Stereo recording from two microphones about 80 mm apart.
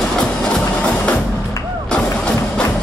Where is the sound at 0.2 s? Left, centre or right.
Centre.